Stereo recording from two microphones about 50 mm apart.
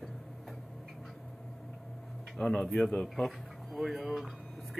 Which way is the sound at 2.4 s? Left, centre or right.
Centre.